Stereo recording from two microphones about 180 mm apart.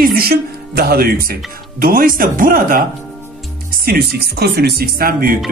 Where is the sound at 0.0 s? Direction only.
60° right (ahead or behind).